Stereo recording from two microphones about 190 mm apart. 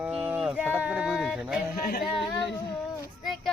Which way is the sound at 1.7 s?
50° left (ahead or behind).